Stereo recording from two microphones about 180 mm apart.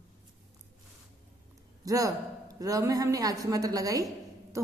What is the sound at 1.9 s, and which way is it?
A woman's voice, 20° right (ahead or behind).